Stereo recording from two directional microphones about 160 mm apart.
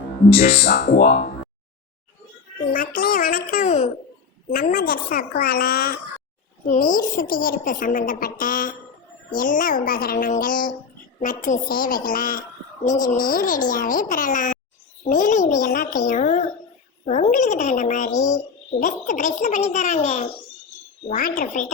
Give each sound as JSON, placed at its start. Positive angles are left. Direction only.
{"t": 0.3, "sound": "speech", "side_deg": 40}
{"t": 2.7, "sound": "a woman's voice", "side_deg": 60}
{"t": 4.5, "sound": "a woman's voice", "side_deg": 65}
{"t": 21.1, "sound": "a child's voice", "side_deg": 55}